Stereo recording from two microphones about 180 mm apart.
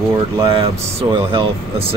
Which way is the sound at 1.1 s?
30° right (ahead or behind).